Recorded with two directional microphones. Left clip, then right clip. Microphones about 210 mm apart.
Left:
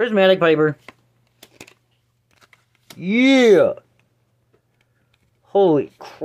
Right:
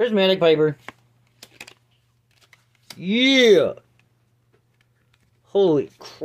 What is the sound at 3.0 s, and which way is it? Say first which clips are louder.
Speech: left 2 dB; 15° left (ahead or behind).